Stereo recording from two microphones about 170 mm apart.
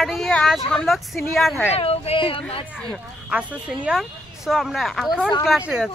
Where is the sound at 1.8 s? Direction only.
35° left (ahead or behind).